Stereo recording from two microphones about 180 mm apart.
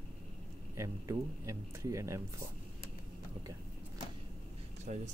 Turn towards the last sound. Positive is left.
turn(degrees=-40)  # may be behind; listen again after turning